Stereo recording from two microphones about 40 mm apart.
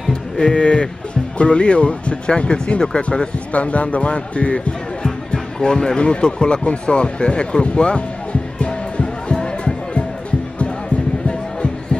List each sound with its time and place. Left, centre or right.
0.1 s a sound: left
1.4 s speech: left
5.0 s music: centre
11.2 s music: left